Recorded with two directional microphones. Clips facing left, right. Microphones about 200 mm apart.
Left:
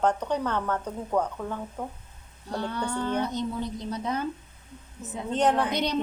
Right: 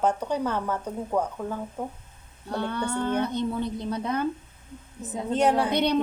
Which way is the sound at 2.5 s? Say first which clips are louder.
Right 2 dB; 55° right (ahead or behind).